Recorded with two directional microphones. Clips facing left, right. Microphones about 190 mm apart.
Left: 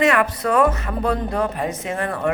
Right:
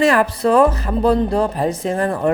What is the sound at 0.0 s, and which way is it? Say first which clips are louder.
Speech: right 3 dB; 30° right (ahead or behind).